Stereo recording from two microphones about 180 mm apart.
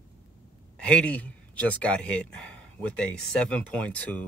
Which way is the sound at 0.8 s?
5° left (ahead or behind).